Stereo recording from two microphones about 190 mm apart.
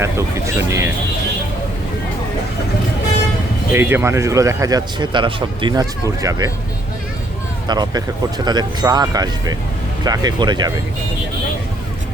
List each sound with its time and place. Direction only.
0.0 s speech: 15° right (ahead or behind)
3.7 s speech: 10° right (ahead or behind)
7.7 s speech: 20° right (ahead or behind)